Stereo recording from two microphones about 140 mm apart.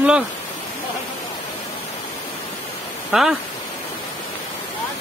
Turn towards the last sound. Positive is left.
turn(degrees=0)  # may be behind; listen again after turning